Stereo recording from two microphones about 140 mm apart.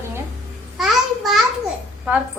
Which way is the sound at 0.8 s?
Centre (ahead or behind).